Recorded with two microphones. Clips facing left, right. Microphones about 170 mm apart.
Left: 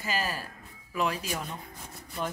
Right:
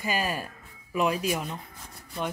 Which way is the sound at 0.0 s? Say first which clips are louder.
Right 3 dB; 15° right (ahead or behind).